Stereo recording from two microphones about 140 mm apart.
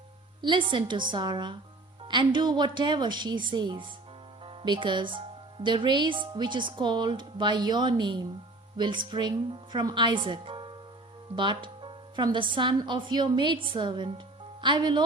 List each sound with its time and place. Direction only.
0.4 s a woman's voice: 35° right (ahead or behind)